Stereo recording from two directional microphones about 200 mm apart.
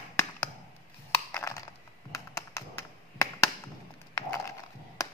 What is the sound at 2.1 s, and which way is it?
Computer keyboard, 15° left (ahead or behind).